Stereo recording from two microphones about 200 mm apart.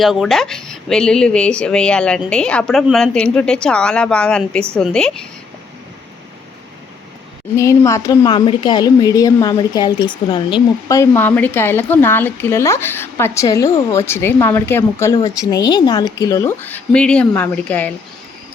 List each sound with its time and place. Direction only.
0.0 s speech: centre (ahead or behind)
7.5 s speech: 15° left (ahead or behind)